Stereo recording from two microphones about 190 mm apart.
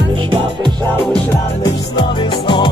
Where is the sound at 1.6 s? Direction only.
25° left (ahead or behind).